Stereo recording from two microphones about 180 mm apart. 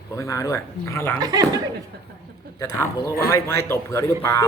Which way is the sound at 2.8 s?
15° left (ahead or behind).